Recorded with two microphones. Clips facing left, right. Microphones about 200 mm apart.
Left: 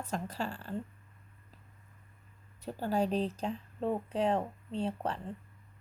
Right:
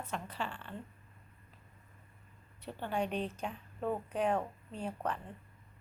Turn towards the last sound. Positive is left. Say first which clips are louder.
# left 3 dB
turn(degrees=30)  # may be behind; listen again after turning